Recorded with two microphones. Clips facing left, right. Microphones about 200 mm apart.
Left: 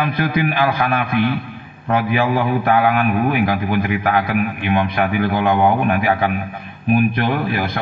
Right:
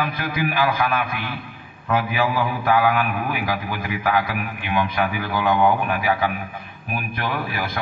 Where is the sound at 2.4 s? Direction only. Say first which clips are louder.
Left 2 dB; 50° left (ahead or behind).